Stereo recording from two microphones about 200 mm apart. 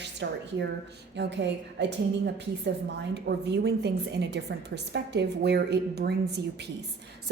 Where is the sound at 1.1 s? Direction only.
60° right (ahead or behind).